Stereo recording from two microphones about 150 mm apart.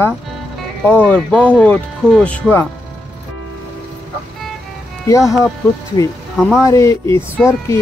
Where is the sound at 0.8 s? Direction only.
10° left (ahead or behind).